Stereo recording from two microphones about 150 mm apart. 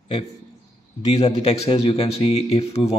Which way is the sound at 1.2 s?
45° left (ahead or behind).